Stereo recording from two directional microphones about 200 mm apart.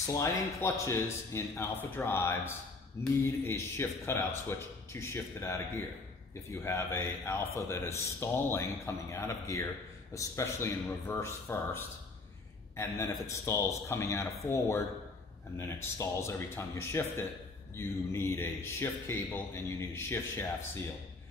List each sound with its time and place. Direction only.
0.0 s speech: 15° left (ahead or behind)